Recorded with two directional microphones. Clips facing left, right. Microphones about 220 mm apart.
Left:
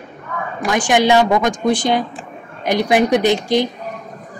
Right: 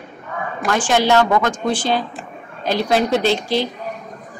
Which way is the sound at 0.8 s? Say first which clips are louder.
Left 2 dB; 15° left (ahead or behind).